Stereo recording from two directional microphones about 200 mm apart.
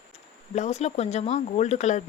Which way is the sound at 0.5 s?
35° left (ahead or behind).